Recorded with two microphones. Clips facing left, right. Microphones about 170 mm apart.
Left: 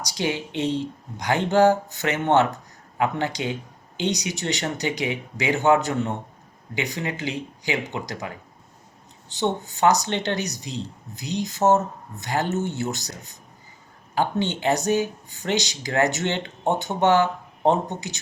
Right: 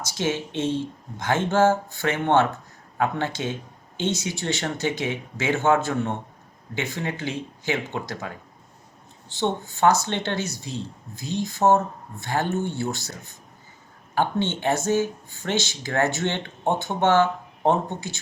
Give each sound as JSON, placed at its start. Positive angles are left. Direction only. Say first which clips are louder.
{"t": 0.0, "sound": "speech", "louder": "even", "side_deg": 15}
{"t": 9.3, "sound": "speech", "louder": "left 1 dB", "side_deg": 20}